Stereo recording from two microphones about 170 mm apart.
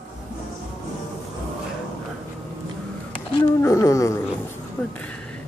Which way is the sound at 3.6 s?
20° left (ahead or behind).